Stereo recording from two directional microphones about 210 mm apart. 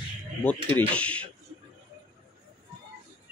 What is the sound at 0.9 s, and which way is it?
Speech, 5° left (ahead or behind).